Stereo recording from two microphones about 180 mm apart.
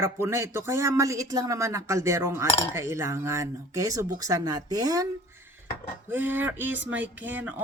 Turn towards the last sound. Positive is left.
turn(degrees=-10)  # may be behind; listen again after turning